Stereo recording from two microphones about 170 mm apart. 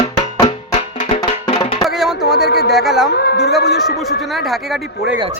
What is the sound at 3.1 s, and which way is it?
Speech, 70° left (ahead or behind).